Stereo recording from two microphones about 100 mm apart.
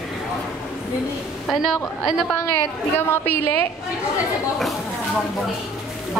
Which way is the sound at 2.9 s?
20° left (ahead or behind).